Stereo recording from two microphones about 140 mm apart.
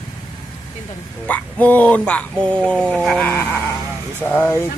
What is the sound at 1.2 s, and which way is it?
Speech, 10° left (ahead or behind).